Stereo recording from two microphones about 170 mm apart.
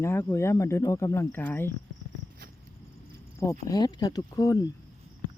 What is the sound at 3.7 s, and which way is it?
Speech, 25° left (ahead or behind).